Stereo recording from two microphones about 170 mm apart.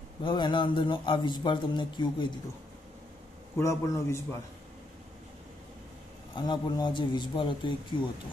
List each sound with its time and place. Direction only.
0.2 s a man's voice: 30° left (ahead or behind)
3.5 s a man's voice: 15° left (ahead or behind)
6.3 s a man's voice: 25° left (ahead or behind)